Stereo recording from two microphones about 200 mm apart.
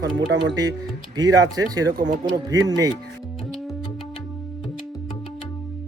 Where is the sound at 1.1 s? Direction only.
20° right (ahead or behind).